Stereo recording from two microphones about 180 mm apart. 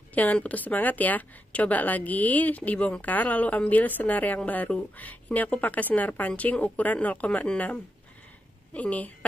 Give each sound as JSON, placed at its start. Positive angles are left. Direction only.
{"t": 0.1, "sound": "a woman's voice", "side_deg": 10}